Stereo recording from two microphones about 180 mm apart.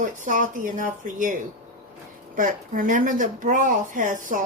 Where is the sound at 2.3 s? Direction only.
50° right (ahead or behind).